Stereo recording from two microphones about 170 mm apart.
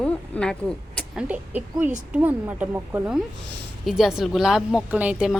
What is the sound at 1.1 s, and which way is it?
A woman's voice, 10° right (ahead or behind).